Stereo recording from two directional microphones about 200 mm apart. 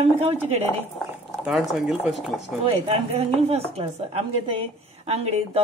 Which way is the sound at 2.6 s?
30° right (ahead or behind).